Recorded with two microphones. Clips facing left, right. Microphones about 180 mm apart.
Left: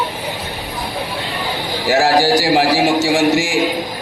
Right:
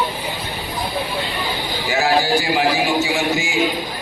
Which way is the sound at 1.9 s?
90° left.